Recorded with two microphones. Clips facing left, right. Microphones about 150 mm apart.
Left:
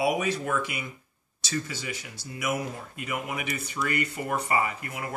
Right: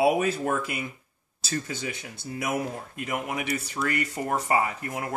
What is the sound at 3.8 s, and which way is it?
Speech, 25° right (ahead or behind).